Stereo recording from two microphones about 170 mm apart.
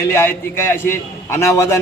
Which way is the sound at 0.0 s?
15° left (ahead or behind).